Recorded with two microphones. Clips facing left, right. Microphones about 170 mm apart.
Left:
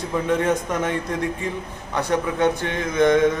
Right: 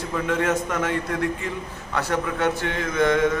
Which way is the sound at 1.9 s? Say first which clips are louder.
Left 2 dB; 15° left (ahead or behind).